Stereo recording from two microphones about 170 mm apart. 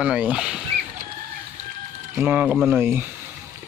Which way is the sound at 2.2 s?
5° right (ahead or behind).